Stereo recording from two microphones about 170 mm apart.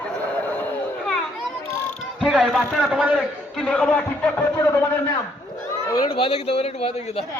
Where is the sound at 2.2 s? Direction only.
5° right (ahead or behind).